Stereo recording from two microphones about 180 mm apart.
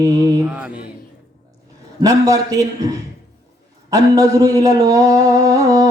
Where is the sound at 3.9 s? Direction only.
20° right (ahead or behind).